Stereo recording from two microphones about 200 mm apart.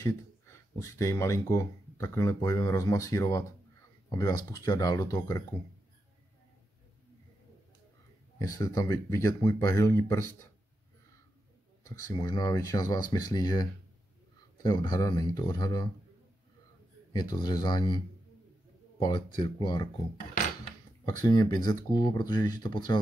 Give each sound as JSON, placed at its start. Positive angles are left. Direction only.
{"t": 0.0, "sound": "speech", "side_deg": 15}
{"t": 8.4, "sound": "speech", "side_deg": 15}
{"t": 11.8, "sound": "speech", "side_deg": 15}
{"t": 17.1, "sound": "speech", "side_deg": 20}
{"t": 21.0, "sound": "speech", "side_deg": 20}